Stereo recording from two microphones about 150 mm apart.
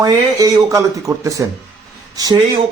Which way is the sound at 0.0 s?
25° right (ahead or behind).